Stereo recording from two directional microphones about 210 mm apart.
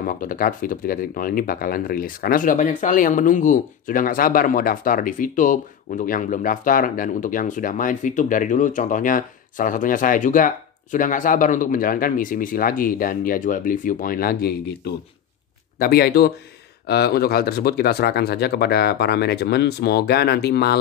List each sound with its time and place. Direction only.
0.0 s speech: 40° left (ahead or behind)